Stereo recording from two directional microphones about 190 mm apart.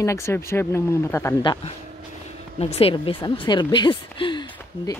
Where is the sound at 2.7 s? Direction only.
30° left (ahead or behind).